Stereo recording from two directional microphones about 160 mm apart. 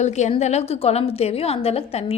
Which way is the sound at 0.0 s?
45° left (ahead or behind).